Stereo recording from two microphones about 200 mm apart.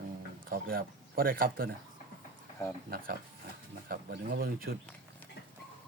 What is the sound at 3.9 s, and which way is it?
Speech, 50° right (ahead or behind).